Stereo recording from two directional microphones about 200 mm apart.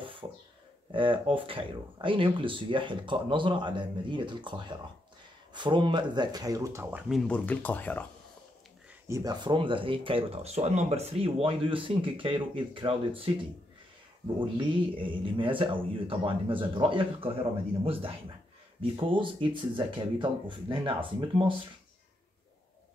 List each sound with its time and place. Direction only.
0.0 s a sound: 25° right (ahead or behind)
0.9 s speech: 25° right (ahead or behind); by 8.1 s 10° left (ahead or behind)
9.0 s speech: 15° right (ahead or behind)